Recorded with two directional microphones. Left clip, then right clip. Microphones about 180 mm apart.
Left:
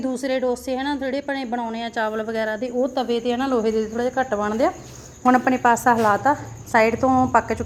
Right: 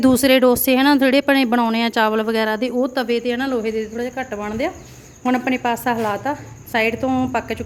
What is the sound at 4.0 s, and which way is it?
Cricket, 10° left (ahead or behind).